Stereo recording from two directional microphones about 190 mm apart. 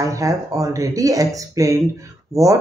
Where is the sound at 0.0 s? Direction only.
15° right (ahead or behind).